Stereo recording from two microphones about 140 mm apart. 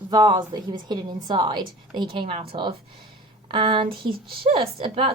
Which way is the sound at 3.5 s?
35° right (ahead or behind).